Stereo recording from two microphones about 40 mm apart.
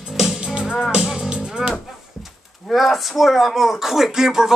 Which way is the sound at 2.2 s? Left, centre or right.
Centre.